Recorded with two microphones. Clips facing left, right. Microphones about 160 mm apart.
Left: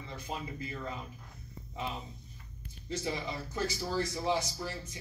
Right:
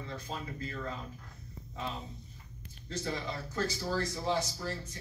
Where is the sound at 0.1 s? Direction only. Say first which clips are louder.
Left 3 dB; 15° left (ahead or behind).